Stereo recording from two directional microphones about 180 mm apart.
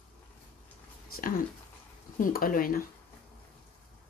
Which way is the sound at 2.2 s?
50° left (ahead or behind).